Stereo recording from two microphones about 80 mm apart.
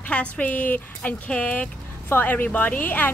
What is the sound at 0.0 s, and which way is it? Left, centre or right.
A woman's voice, centre.